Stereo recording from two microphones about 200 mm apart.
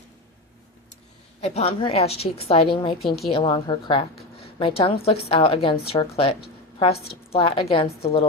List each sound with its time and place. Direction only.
1.4 s a woman's voice: 30° left (ahead or behind)